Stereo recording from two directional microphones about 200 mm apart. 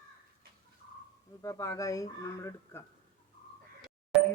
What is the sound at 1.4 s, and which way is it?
Speech, 15° left (ahead or behind).